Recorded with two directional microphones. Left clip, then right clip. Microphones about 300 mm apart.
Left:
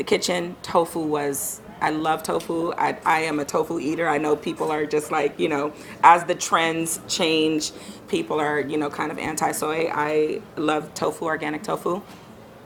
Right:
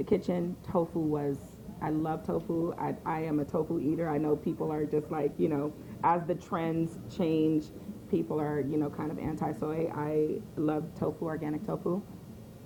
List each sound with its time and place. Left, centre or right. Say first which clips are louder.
0.0 s speech: left 8 dB; centre
2.3 s speech: left 7 dB; left
2.6 s speech: left 13 dB; centre